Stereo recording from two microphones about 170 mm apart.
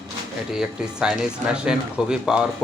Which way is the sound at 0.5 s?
5° right (ahead or behind).